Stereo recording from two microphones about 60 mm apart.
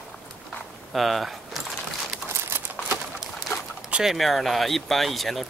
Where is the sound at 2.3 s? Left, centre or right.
Right.